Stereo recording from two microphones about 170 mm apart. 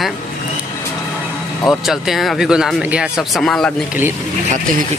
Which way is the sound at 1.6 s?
Centre (ahead or behind).